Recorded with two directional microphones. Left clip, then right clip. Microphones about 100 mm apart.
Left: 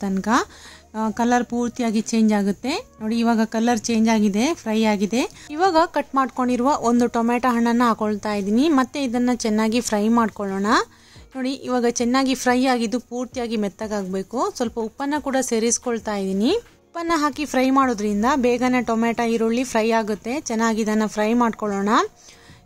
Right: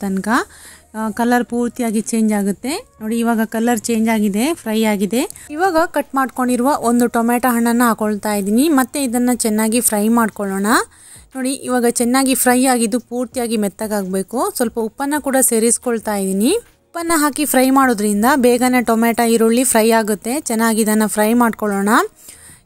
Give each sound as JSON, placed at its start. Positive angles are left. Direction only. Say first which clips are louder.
{"t": 0.0, "sound": "speech", "louder": "right 3 dB", "side_deg": -35}
{"t": 3.1, "sound": "speech", "louder": "right 3 dB", "side_deg": -10}
{"t": 3.3, "sound": "a woman's voice", "louder": "right 3 dB", "side_deg": -35}
{"t": 10.6, "sound": "a woman's voice", "louder": "right 3 dB", "side_deg": -50}